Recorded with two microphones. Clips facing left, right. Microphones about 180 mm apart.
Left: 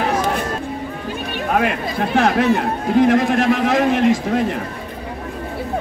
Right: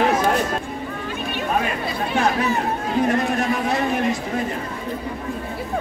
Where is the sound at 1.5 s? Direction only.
75° left (ahead or behind).